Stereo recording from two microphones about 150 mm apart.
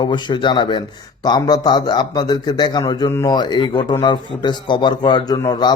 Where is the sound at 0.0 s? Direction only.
30° left (ahead or behind).